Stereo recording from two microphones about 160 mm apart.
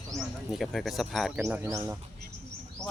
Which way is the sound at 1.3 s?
15° right (ahead or behind).